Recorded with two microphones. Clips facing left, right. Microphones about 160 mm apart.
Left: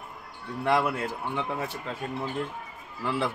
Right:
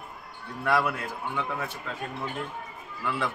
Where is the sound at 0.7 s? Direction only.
25° left (ahead or behind).